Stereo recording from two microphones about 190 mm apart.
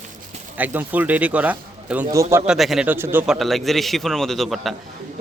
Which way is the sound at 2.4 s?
Centre (ahead or behind).